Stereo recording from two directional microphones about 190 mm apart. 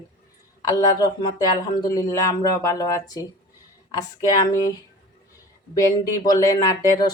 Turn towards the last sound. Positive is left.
turn(degrees=20)  # may be behind; listen again after turning